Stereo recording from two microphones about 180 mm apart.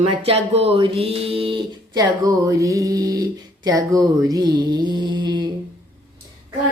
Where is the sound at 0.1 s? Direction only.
35° right (ahead or behind).